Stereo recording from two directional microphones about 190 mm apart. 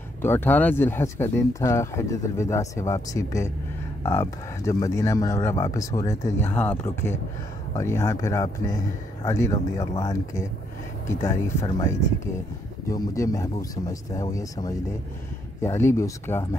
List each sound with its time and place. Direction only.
0.2 s speech: 10° left (ahead or behind)